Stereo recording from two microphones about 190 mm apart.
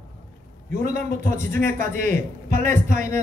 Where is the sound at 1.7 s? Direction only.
45° right (ahead or behind).